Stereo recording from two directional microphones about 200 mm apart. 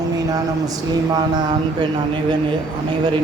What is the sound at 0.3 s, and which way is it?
Speech, 20° right (ahead or behind).